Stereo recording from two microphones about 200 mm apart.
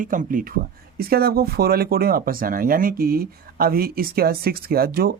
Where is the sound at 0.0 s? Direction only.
40° right (ahead or behind).